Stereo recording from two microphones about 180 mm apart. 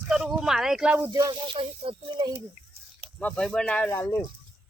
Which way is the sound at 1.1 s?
25° right (ahead or behind).